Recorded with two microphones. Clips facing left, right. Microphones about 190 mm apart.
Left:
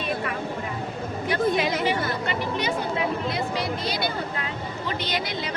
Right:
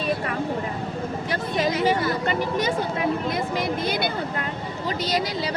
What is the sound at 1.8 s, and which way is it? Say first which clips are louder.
Speech: right 3 dB; 45° right (ahead or behind).